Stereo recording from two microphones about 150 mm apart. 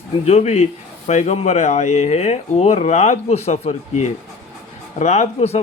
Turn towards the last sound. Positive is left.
turn(degrees=50)  # may be behind; listen again after turning